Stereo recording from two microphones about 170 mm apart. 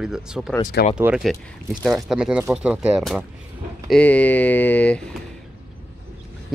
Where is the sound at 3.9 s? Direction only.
10° left (ahead or behind).